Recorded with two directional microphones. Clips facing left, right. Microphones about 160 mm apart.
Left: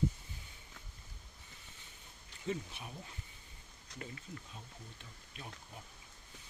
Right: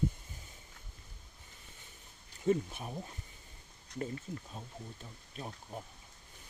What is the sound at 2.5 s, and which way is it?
Speech, 45° right (ahead or behind).